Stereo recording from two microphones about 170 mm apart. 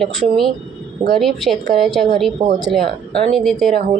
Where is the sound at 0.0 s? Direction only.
Centre (ahead or behind).